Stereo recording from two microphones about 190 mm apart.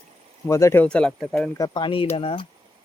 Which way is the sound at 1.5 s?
20° left (ahead or behind).